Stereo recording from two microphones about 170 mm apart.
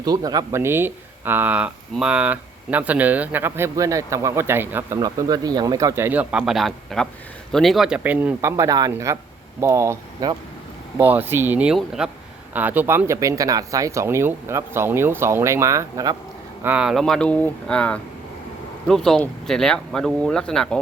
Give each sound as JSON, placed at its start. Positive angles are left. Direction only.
{"t": 0.0, "sound": "speech", "side_deg": -20}
{"t": 16.6, "sound": "speech", "side_deg": -5}